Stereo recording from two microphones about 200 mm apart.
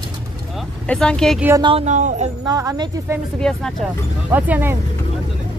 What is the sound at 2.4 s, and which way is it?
Speech, 20° right (ahead or behind).